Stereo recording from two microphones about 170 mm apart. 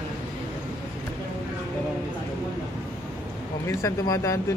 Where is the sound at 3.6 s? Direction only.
20° left (ahead or behind).